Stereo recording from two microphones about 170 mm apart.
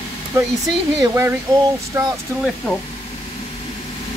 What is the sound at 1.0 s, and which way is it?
Speech, 15° right (ahead or behind).